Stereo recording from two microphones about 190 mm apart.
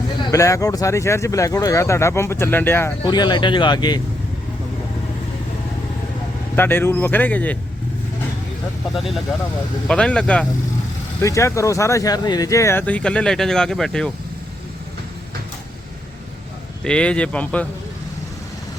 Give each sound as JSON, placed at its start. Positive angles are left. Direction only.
{"t": 0.2, "sound": "speech", "side_deg": 15}
{"t": 3.0, "sound": "speech", "side_deg": 25}
{"t": 6.6, "sound": "speech", "side_deg": 10}
{"t": 9.0, "sound": "speech", "side_deg": 0}
{"t": 16.8, "sound": "speech", "side_deg": 5}